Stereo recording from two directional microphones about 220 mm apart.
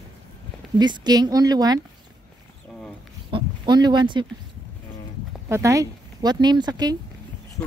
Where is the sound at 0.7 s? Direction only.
20° right (ahead or behind).